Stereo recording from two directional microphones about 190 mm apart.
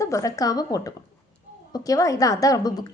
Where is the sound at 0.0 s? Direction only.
15° left (ahead or behind).